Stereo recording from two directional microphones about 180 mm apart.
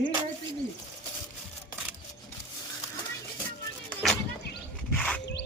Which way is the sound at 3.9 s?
5° left (ahead or behind).